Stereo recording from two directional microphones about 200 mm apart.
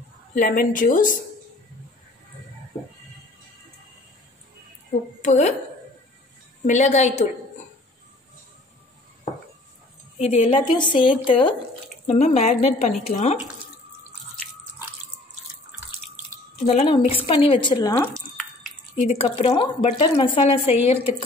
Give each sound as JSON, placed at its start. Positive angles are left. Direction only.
{"t": 0.3, "sound": "speech", "side_deg": 40}
{"t": 5.2, "sound": "speech", "side_deg": 35}
{"t": 6.6, "sound": "speech", "side_deg": 35}
{"t": 10.1, "sound": "speech", "side_deg": 35}
{"t": 16.6, "sound": "speech", "side_deg": 30}
{"t": 19.0, "sound": "speech", "side_deg": 30}